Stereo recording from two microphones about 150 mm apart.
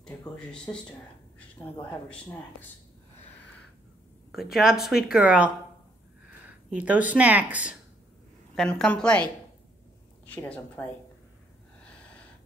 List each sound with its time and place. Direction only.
0.7 s a woman's voice: 15° left (ahead or behind)
4.3 s speech: centre (ahead or behind)
6.7 s speech: 10° right (ahead or behind)
8.5 s a woman's voice: 5° left (ahead or behind)